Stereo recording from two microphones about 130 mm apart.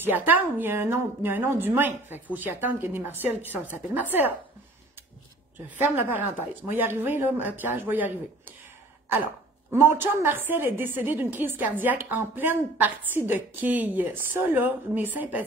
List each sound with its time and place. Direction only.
0.0 s a woman's voice: 15° right (ahead or behind)
5.8 s a woman's voice: 15° right (ahead or behind)